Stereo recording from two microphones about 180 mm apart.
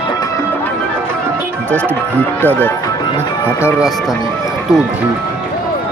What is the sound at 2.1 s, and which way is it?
Speech, 10° left (ahead or behind).